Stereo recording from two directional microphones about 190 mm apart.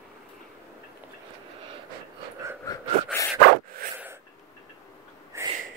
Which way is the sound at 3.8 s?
50° right (ahead or behind).